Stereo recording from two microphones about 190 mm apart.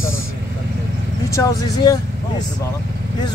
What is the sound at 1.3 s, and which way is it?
Speech, 20° left (ahead or behind).